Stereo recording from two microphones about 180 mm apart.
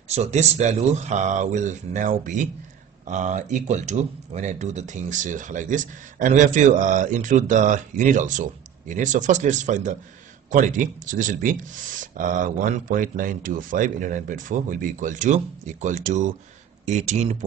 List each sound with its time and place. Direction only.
0.1 s speech: 40° right (ahead or behind)